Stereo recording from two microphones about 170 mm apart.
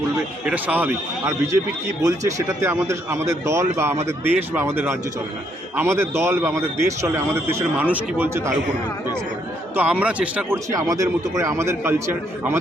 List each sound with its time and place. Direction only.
0.4 s a man's voice: 10° right (ahead or behind)
9.7 s a man's voice: 10° right (ahead or behind)
10.7 s a man's voice: 20° right (ahead or behind)